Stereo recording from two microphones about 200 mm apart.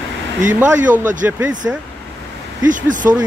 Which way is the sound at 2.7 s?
40° right (ahead or behind).